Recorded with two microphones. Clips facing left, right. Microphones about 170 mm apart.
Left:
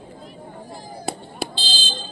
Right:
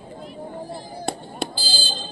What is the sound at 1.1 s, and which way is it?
Fire alarm, 5° left (ahead or behind).